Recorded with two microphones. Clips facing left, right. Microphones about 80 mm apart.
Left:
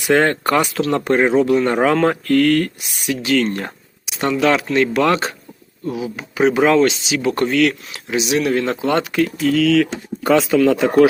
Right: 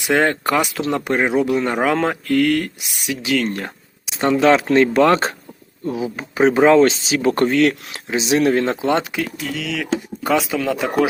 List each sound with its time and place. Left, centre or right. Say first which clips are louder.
0.0 s speech: left 2 dB; centre
4.1 s speech: right 2 dB; right
9.1 s speech: left 8 dB; centre